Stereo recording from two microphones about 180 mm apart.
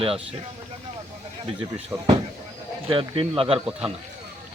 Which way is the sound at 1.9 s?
10° right (ahead or behind).